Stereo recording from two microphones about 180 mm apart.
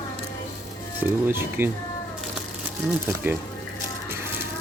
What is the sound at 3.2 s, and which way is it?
Speech, 10° right (ahead or behind).